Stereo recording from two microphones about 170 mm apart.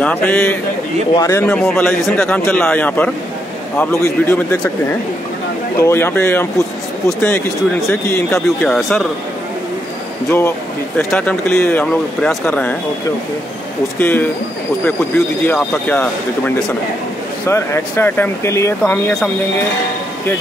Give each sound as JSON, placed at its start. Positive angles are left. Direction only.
{"t": 0.0, "sound": "speech", "side_deg": 10}
{"t": 11.0, "sound": "speech", "side_deg": 5}
{"t": 13.9, "sound": "speech", "side_deg": 10}